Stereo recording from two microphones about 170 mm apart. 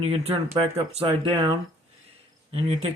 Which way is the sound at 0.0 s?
35° right (ahead or behind).